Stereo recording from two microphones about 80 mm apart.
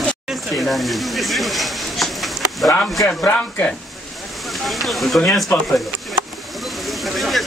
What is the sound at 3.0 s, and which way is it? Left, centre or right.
Speech, centre.